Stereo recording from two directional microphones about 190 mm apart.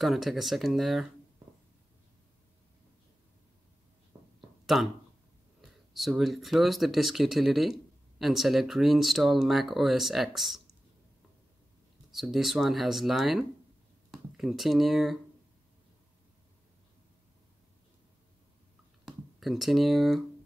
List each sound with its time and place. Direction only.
0.0 s speech: centre (ahead or behind)
4.1 s a sound: 20° right (ahead or behind)
4.7 s speech: centre (ahead or behind)
12.1 s speech: centre (ahead or behind)
19.0 s speech: centre (ahead or behind)